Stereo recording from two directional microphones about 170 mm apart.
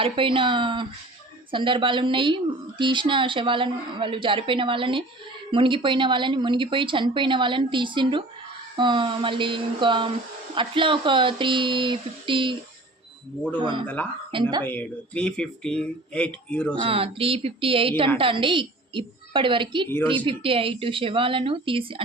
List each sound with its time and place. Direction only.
0.0 s a woman's voice: 30° right (ahead or behind)
13.6 s a woman's voice: 25° right (ahead or behind)
13.8 s speech: 10° left (ahead or behind)
16.8 s a woman's voice: 35° right (ahead or behind)